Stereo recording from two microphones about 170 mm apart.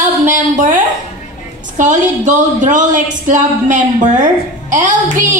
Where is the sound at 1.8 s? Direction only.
45° right (ahead or behind).